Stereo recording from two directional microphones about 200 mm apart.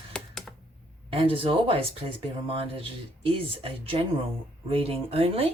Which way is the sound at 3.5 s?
25° right (ahead or behind).